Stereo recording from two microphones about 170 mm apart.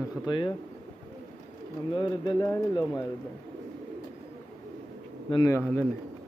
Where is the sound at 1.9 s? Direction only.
25° left (ahead or behind).